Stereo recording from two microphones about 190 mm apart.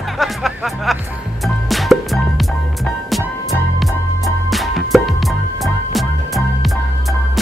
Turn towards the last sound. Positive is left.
turn(degrees=0)  # may be behind; listen again after turning